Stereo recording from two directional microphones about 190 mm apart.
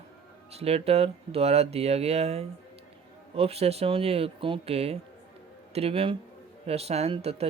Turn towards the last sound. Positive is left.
turn(degrees=-30)  # may be behind; listen again after turning